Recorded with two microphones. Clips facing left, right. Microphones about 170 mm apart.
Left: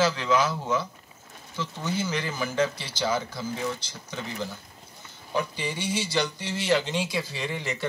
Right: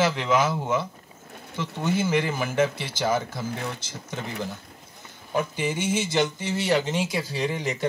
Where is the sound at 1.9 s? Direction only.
55° right (ahead or behind).